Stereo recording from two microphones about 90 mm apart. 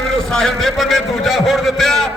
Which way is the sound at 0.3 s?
5° left (ahead or behind).